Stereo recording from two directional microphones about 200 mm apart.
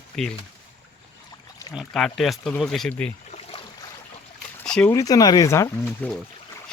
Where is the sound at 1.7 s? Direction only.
Centre (ahead or behind).